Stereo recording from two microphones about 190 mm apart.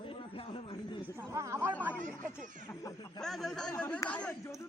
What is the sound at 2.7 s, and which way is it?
Speech, 20° left (ahead or behind).